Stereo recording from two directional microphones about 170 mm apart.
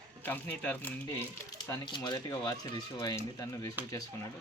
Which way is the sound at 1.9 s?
25° left (ahead or behind).